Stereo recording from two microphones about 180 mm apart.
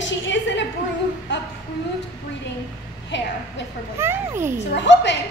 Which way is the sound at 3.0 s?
80° left.